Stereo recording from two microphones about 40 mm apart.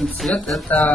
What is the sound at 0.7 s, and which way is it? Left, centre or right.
Speech, left.